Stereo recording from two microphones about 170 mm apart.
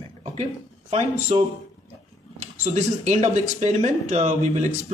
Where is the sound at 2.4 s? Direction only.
45° right (ahead or behind).